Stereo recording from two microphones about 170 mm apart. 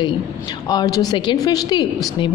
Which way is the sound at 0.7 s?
20° left (ahead or behind).